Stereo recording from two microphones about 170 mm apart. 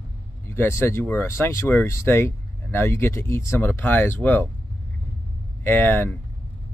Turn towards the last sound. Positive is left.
turn(degrees=10)  # may be behind; listen again after turning